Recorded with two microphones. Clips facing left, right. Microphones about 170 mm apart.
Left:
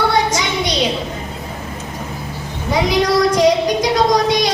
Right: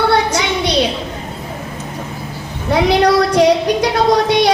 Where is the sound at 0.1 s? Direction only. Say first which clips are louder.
Right 2 dB; 65° right (ahead or behind).